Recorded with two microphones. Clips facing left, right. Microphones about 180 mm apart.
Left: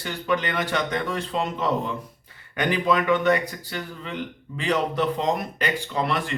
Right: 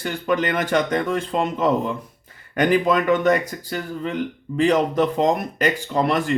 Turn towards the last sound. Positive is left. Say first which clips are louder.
# right 5 dB
turn(degrees=-45)  # may be behind; listen again after turning